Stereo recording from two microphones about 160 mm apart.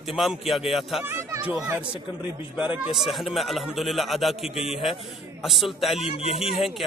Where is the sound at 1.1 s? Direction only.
15° right (ahead or behind).